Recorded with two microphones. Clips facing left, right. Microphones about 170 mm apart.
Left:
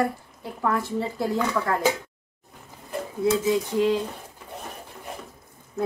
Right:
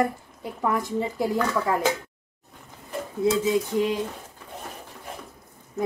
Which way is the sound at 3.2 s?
15° right (ahead or behind).